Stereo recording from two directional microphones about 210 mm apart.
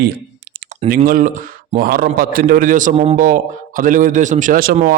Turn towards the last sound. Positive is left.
turn(degrees=-45)  # may be behind; listen again after turning